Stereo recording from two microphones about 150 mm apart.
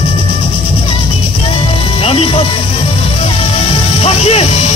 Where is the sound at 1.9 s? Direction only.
40° left (ahead or behind).